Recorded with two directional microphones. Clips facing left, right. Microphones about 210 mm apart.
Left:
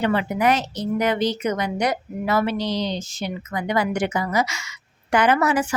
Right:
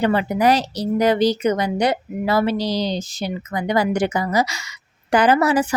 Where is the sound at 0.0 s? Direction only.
35° right (ahead or behind).